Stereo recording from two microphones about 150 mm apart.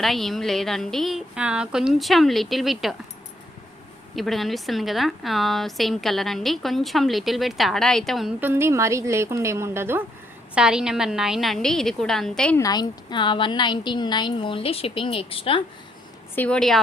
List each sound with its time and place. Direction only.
0.0 s a woman's voice: centre (ahead or behind)
4.1 s a woman's voice: centre (ahead or behind)
8.4 s a woman's voice: 15° right (ahead or behind)
10.5 s a woman's voice: 5° right (ahead or behind)
12.5 s speech: 25° left (ahead or behind)
16.3 s a woman's voice: 10° left (ahead or behind)